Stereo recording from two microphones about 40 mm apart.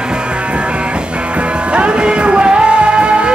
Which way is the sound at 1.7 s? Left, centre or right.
Right.